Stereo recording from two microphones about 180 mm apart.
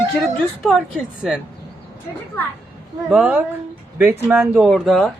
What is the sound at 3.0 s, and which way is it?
Speech, 5° right (ahead or behind).